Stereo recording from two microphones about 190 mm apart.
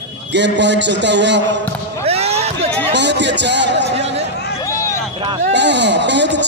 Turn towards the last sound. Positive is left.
turn(degrees=-65)  # may be behind; listen again after turning